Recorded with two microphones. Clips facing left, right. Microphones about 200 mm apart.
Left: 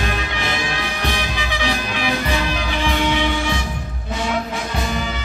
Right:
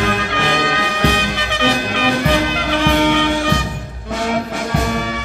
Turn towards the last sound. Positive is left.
turn(degrees=-60)  # may be behind; listen again after turning